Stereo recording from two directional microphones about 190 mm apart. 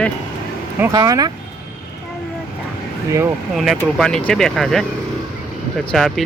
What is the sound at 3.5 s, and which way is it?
Speech, centre (ahead or behind).